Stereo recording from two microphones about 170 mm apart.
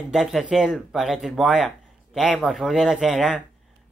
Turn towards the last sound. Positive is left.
turn(degrees=0)  # may be behind; listen again after turning